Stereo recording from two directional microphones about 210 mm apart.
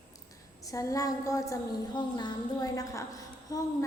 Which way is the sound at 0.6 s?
15° left (ahead or behind).